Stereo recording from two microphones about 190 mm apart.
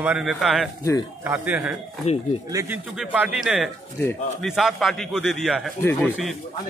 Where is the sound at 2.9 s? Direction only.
5° right (ahead or behind).